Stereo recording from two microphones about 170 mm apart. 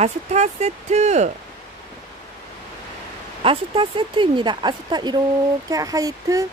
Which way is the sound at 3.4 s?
30° right (ahead or behind).